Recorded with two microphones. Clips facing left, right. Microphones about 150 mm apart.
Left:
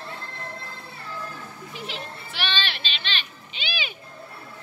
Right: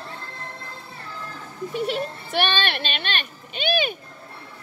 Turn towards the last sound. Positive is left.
turn(degrees=-50)  # may be behind; listen again after turning